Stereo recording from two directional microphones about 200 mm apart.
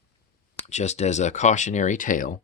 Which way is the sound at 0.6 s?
35° left (ahead or behind).